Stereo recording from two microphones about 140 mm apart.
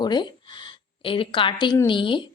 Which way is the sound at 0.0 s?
30° left (ahead or behind).